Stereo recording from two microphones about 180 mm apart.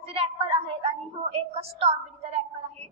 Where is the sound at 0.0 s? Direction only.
35° right (ahead or behind).